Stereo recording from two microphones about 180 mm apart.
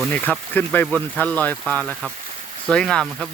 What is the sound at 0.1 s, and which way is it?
Speech, 10° left (ahead or behind).